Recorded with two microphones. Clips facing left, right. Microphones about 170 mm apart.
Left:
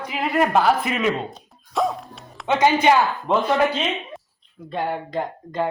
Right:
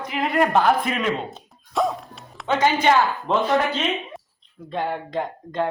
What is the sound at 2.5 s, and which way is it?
Speech, 15° left (ahead or behind).